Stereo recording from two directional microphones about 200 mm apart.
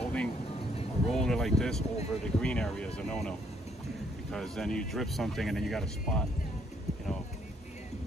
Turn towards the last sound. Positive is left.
turn(degrees=5)  # may be behind; listen again after turning